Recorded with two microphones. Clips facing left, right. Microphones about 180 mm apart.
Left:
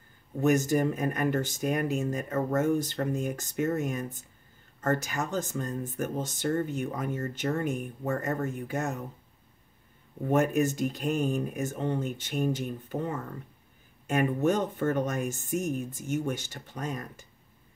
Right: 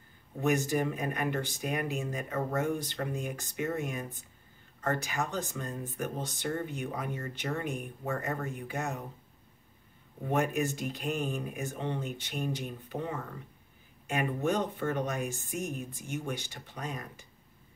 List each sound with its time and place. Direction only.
0.4 s speech: 45° left (ahead or behind)
10.3 s speech: 45° left (ahead or behind)